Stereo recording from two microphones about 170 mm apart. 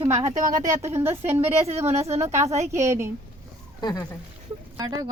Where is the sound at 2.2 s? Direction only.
15° right (ahead or behind).